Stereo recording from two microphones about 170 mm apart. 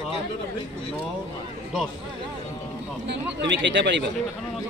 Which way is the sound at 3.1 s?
90° right.